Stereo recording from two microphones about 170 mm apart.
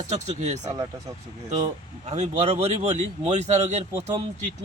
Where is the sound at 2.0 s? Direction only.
40° right (ahead or behind).